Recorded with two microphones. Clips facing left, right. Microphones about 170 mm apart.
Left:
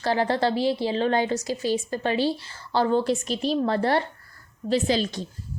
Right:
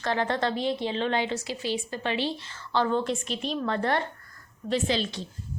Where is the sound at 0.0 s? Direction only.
35° left (ahead or behind).